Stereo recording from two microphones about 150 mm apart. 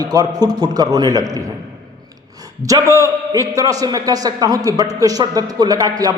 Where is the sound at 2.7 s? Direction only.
20° right (ahead or behind).